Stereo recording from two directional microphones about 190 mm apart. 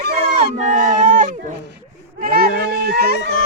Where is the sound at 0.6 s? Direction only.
45° right (ahead or behind).